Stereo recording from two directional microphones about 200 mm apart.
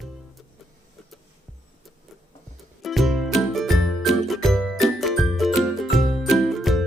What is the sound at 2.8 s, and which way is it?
Music, centre (ahead or behind).